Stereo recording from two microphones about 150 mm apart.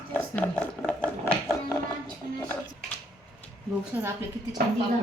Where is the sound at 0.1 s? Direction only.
10° left (ahead or behind).